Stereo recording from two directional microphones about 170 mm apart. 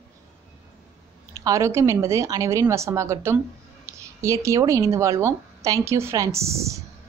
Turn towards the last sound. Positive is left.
turn(degrees=-15)  # may be behind; listen again after turning